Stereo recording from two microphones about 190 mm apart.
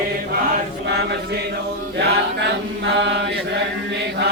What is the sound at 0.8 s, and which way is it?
Chant, 65° right (ahead or behind).